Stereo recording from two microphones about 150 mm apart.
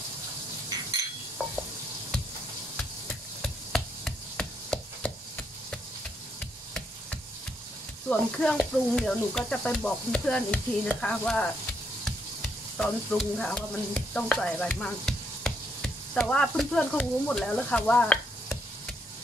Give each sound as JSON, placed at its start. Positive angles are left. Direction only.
{"t": 2.8, "sound": "chopping", "side_deg": 5}
{"t": 6.4, "sound": "frying", "side_deg": 5}
{"t": 8.1, "sound": "speech", "side_deg": 5}
{"t": 12.0, "sound": "stir", "side_deg": 5}
{"t": 16.3, "sound": "speech", "side_deg": 5}